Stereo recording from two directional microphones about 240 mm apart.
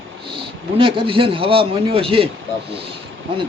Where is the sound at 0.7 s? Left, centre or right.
Right.